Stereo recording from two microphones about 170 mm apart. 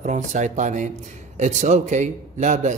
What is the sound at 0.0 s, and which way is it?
Speech, 45° right (ahead or behind).